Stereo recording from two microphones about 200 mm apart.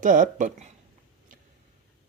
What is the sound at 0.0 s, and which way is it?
Speech, 40° right (ahead or behind).